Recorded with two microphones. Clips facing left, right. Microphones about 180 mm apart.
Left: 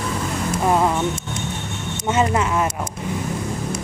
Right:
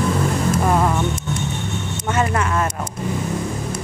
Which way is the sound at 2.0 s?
15° left (ahead or behind).